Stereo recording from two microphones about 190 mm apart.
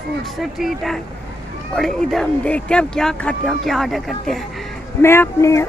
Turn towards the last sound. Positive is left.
turn(degrees=15)  # may be behind; listen again after turning